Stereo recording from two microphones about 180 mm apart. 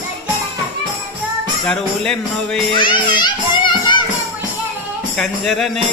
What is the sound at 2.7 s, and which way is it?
Music, 25° left (ahead or behind).